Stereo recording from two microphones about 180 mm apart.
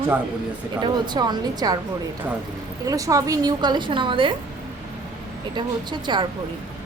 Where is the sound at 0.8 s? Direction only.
25° right (ahead or behind).